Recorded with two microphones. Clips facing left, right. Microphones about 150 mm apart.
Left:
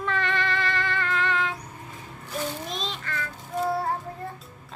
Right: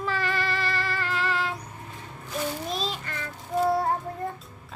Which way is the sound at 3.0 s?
20° right (ahead or behind).